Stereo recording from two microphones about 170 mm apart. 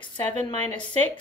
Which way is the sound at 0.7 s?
10° left (ahead or behind).